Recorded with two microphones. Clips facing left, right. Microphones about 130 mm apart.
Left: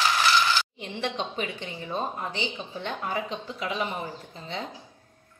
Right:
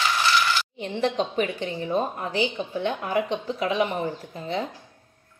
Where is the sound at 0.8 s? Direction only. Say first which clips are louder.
Right 6 dB; 40° right (ahead or behind).